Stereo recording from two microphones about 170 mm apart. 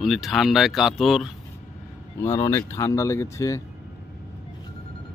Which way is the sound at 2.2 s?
15° left (ahead or behind).